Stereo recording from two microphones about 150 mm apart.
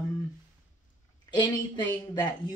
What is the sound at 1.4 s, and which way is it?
Speech, 30° left (ahead or behind).